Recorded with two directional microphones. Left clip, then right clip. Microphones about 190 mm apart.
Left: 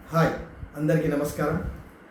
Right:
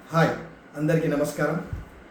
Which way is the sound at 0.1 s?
5° right (ahead or behind).